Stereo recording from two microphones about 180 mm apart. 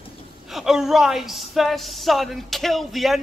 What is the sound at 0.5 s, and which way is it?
A man's voice, centre (ahead or behind).